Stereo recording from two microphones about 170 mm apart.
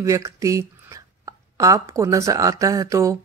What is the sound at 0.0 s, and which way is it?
Speech, 20° right (ahead or behind).